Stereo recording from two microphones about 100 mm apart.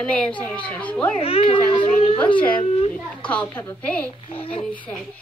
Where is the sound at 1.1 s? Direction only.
75° left (ahead or behind).